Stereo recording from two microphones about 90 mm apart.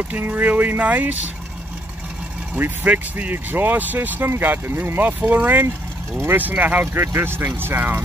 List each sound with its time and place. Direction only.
0.1 s speech: 20° right (ahead or behind)
2.5 s speech: 20° right (ahead or behind)